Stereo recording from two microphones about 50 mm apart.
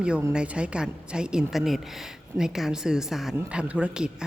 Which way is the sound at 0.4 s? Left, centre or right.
Right.